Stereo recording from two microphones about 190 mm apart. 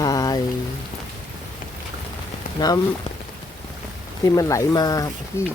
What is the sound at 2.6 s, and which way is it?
Speech, 20° left (ahead or behind).